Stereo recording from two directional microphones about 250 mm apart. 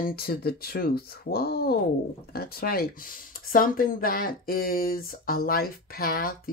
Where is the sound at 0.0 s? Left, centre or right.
Left.